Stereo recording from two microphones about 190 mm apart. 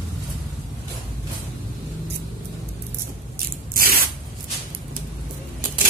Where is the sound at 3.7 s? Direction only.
50° right (ahead or behind).